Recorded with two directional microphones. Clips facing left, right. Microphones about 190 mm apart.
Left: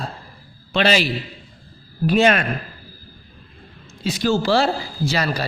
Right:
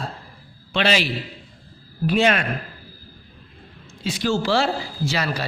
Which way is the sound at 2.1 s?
45° left (ahead or behind).